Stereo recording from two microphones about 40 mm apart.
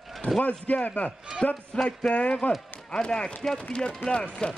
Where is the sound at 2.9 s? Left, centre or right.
Centre.